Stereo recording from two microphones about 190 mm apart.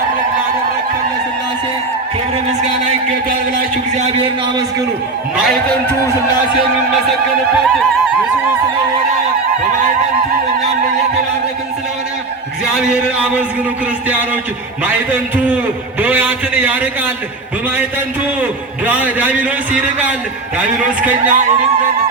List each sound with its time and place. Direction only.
3.9 s a man's voice: 35° right (ahead or behind)
5.5 s a man's voice: 5° left (ahead or behind)
12.7 s a man's voice: 5° right (ahead or behind)
14.8 s a man's voice: 10° right (ahead or behind)
18.9 s a man's voice: 10° right (ahead or behind)